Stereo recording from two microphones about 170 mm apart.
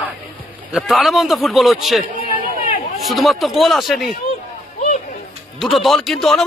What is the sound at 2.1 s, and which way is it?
Run, 55° right (ahead or behind).